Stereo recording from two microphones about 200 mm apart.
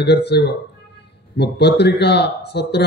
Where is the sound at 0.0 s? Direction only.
55° left (ahead or behind).